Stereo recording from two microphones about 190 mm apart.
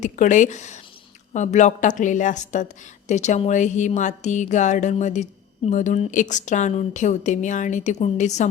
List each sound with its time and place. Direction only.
0.0 s speech: 40° left (ahead or behind)